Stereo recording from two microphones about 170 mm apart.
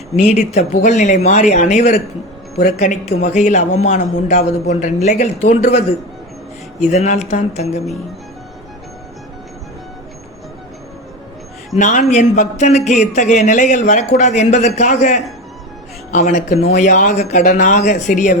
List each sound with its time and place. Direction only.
0.2 s speech: 40° left (ahead or behind)
6.9 s speech: 40° left (ahead or behind)
11.8 s speech: 45° left (ahead or behind)